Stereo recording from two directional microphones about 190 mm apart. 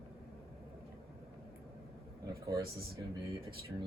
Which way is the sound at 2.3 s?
15° right (ahead or behind).